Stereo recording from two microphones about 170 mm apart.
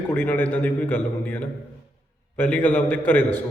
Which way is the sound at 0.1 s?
10° left (ahead or behind).